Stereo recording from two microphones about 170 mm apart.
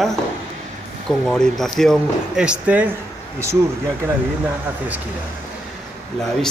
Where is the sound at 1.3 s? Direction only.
5° left (ahead or behind).